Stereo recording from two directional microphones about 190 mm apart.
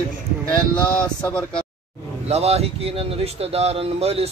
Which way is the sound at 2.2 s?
35° right (ahead or behind).